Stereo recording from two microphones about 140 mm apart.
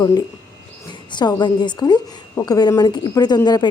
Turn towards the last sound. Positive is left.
turn(degrees=30)  # may be behind; listen again after turning